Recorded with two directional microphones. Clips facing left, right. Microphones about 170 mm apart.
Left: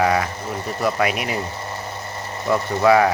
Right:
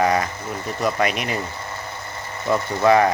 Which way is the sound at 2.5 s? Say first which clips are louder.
Left 1 dB; 5° left (ahead or behind).